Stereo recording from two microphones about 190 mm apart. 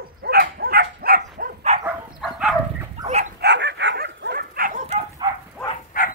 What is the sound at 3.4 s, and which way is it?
Dog, 65° right (ahead or behind).